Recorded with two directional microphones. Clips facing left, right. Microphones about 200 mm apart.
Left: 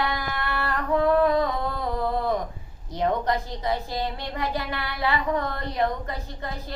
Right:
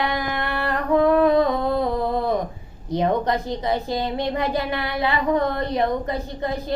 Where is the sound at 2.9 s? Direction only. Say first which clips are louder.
Right 4 dB; 20° right (ahead or behind).